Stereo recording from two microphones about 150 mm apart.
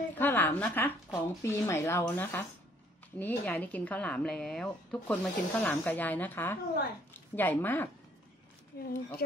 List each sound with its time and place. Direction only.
0.1 s speech: 15° left (ahead or behind)
8.7 s speech: 90° left